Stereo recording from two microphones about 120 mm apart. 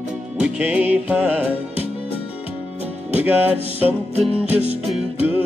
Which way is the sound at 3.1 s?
15° right (ahead or behind).